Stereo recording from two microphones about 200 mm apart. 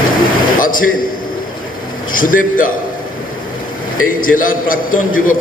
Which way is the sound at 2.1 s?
45° left (ahead or behind).